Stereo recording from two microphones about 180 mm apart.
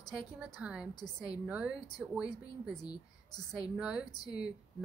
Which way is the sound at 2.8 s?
20° left (ahead or behind).